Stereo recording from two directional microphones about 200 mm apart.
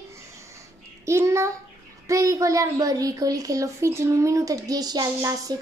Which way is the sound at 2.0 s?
15° right (ahead or behind).